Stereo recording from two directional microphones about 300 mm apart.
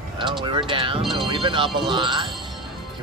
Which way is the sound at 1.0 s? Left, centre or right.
Centre.